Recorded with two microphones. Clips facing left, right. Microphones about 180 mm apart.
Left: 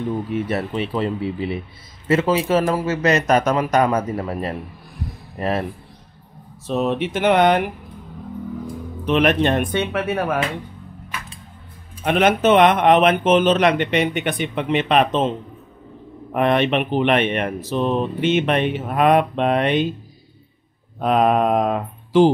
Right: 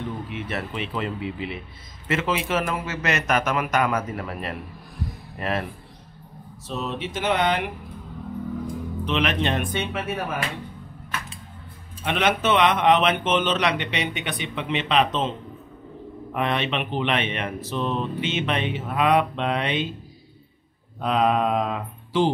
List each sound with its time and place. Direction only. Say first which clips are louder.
0.3 s a man's voice: left 8 dB; 40° left (ahead or behind)
6.7 s speech: left 9 dB; 60° left (ahead or behind)
9.0 s speech: left 8 dB; 50° left (ahead or behind)
12.0 s speech: left 6 dB; 45° left (ahead or behind)
16.3 s speech: left 7 dB; 55° left (ahead or behind)
21.0 s speech: left 5 dB; 50° left (ahead or behind)